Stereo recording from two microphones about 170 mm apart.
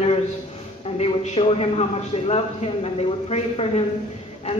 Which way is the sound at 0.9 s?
40° left (ahead or behind).